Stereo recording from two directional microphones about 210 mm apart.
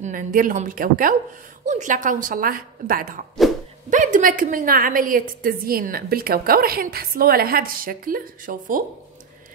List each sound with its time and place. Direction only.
0.0 s a woman's voice: 40° right (ahead or behind)